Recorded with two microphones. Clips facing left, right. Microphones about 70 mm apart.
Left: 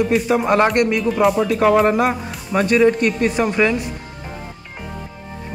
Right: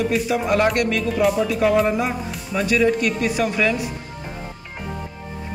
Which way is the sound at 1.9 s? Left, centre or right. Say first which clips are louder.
Left 5 dB; left.